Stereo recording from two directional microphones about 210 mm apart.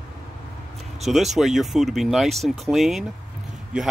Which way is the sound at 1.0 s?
Centre (ahead or behind).